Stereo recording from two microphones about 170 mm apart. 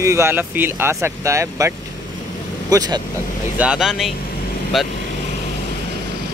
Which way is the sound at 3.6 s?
5° right (ahead or behind).